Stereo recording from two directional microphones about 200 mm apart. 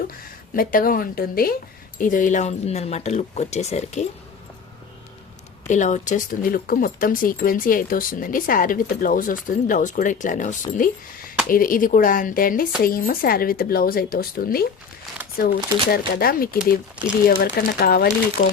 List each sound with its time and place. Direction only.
0.5 s speech: 45° left (ahead or behind)
5.6 s speech: 40° left (ahead or behind)